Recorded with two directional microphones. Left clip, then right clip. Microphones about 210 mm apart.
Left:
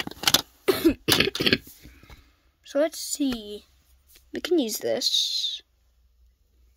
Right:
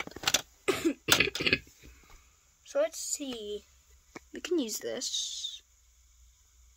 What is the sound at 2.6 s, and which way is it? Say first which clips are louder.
Speech: left 5 dB; 25° left (ahead or behind).